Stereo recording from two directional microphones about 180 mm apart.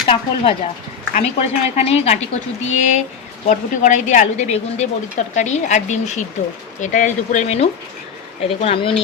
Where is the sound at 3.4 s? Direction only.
45° left (ahead or behind).